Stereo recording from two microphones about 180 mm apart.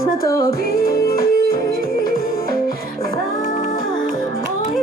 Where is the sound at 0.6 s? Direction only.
55° left (ahead or behind).